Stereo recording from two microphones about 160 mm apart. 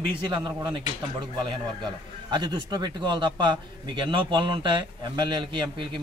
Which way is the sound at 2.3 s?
25° right (ahead or behind).